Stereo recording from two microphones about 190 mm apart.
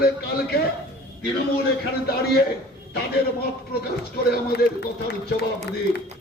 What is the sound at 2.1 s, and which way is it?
Speech, 55° left (ahead or behind).